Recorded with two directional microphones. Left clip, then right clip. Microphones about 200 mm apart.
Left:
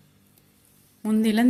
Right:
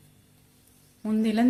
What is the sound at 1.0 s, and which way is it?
Speech, 40° left (ahead or behind).